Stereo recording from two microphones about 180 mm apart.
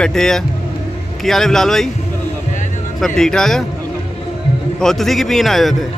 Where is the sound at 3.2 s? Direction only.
5° left (ahead or behind).